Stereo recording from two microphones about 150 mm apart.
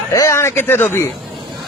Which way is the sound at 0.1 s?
20° left (ahead or behind).